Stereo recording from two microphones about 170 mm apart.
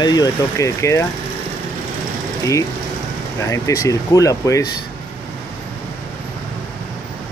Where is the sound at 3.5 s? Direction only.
20° left (ahead or behind).